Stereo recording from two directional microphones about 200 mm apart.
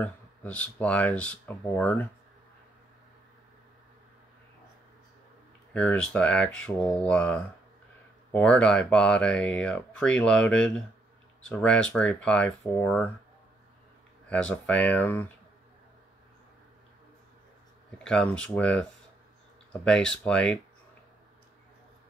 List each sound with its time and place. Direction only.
0.0 s speech: 5° left (ahead or behind)
5.7 s speech: 5° left (ahead or behind)
14.3 s speech: 5° left (ahead or behind)
17.9 s speech: 5° left (ahead or behind)